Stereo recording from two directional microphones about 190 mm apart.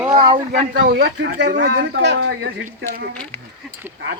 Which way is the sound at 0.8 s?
70° right (ahead or behind).